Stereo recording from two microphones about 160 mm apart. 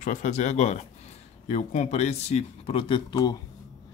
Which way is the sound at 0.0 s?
50° left (ahead or behind).